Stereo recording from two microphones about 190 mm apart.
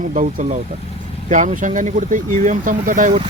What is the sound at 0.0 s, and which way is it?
Speech, 45° right (ahead or behind).